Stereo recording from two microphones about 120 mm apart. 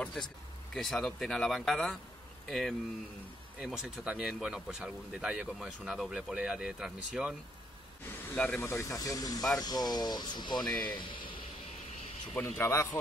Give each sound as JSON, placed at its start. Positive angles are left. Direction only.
{"t": 0.0, "sound": "speech", "side_deg": 5}
{"t": 8.4, "sound": "speech", "side_deg": 10}
{"t": 8.6, "sound": "speech", "side_deg": 25}
{"t": 10.7, "sound": "speech", "side_deg": 10}
{"t": 11.0, "sound": "vehicle", "side_deg": 45}
{"t": 12.4, "sound": "speech", "side_deg": 20}